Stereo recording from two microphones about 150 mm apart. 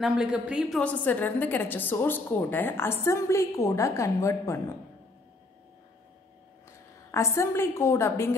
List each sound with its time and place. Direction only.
0.0 s a woman's voice: 5° right (ahead or behind)
0.7 s a woman's voice: 10° left (ahead or behind)
7.1 s a woman's voice: 20° left (ahead or behind)